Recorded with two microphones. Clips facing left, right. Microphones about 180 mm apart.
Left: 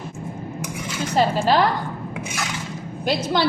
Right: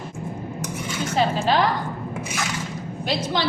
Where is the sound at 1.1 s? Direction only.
45° left (ahead or behind).